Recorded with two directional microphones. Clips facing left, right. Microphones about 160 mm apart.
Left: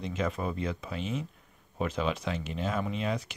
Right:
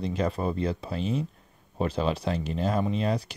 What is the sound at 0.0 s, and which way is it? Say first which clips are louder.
Speech: right 4 dB; 35° right (ahead or behind).